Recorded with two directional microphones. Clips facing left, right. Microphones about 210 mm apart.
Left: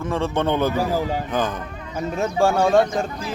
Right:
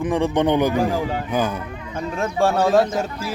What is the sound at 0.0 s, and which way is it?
A man's voice, 15° right (ahead or behind).